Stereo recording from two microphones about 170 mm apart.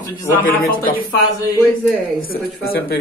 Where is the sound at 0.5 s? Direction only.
60° left (ahead or behind).